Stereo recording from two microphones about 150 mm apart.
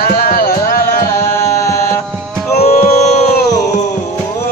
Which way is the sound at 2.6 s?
45° left (ahead or behind).